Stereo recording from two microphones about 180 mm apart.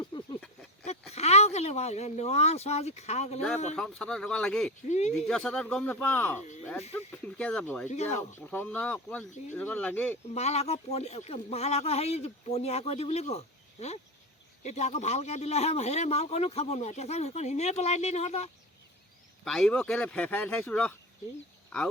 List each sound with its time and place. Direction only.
0.0 s a sound: 25° left (ahead or behind)
1.1 s speech: 35° left (ahead or behind)
3.8 s speech: 5° left (ahead or behind)
4.9 s a man's voice: 40° left (ahead or behind)
5.3 s speech: 5° left (ahead or behind)
10.3 s a man's voice: 35° left (ahead or behind)
19.5 s speech: 5° left (ahead or behind)